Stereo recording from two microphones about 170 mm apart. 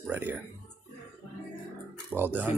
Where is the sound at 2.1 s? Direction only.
10° right (ahead or behind).